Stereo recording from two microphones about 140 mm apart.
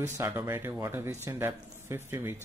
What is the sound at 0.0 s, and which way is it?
Speech, 20° right (ahead or behind).